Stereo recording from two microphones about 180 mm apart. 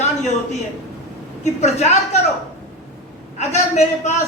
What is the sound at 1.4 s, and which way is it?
Speech, 40° left (ahead or behind).